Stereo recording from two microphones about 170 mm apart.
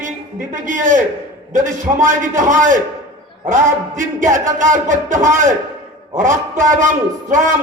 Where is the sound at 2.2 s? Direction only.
50° right (ahead or behind).